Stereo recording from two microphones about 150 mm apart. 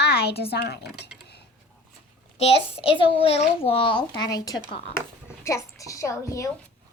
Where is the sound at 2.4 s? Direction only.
40° left (ahead or behind); by 4.6 s 25° left (ahead or behind).